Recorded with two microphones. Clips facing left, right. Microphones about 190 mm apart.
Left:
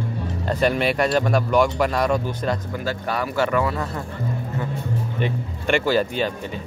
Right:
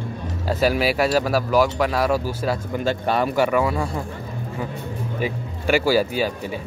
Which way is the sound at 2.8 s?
25° right (ahead or behind).